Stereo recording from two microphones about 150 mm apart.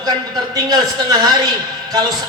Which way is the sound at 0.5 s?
25° right (ahead or behind).